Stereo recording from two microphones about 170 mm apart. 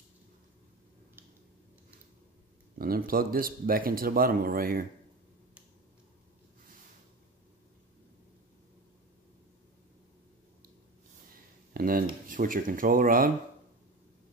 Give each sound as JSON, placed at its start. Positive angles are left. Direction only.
{"t": 2.8, "sound": "speech", "side_deg": -60}
{"t": 11.7, "sound": "speech", "side_deg": -55}